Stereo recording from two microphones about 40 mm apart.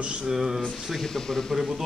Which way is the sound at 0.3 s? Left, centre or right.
Centre.